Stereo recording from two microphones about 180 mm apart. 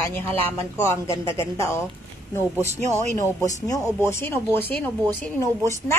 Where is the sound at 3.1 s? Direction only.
20° left (ahead or behind).